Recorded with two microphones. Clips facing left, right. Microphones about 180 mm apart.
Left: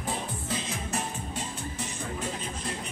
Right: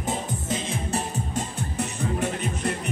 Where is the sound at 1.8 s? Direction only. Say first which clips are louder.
Right 11 dB; 65° right (ahead or behind).